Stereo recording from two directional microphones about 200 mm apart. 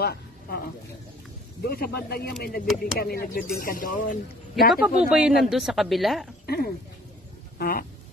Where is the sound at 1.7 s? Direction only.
50° left (ahead or behind).